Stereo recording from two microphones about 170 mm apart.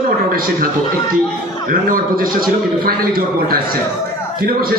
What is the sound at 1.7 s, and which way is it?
A man's voice, 55° right (ahead or behind).